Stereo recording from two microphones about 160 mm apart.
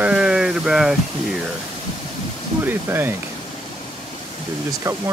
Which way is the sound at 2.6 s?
15° right (ahead or behind).